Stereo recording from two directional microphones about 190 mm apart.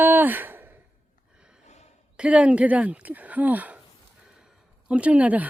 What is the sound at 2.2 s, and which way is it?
Speech, 5° right (ahead or behind).